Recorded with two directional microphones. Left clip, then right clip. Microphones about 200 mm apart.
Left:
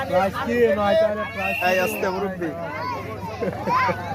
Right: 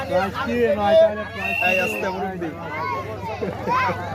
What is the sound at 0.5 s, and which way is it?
Speech, 50° left (ahead or behind).